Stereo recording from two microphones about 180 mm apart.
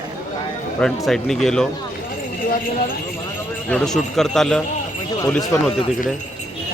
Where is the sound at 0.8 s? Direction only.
Centre (ahead or behind).